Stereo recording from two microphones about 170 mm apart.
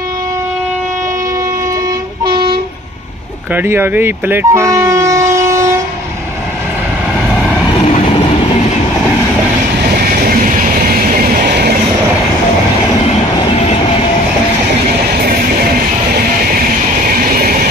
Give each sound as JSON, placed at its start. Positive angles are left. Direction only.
{"t": 2.2, "sound": "train", "side_deg": -25}
{"t": 3.5, "sound": "speech", "side_deg": -15}
{"t": 5.3, "sound": "vehicle", "side_deg": -15}
{"t": 10.2, "sound": "train", "side_deg": -55}
{"t": 17.1, "sound": "vehicle", "side_deg": -60}